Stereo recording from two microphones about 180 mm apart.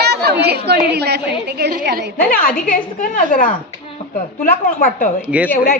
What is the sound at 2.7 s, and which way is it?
A woman's voice, 50° left (ahead or behind).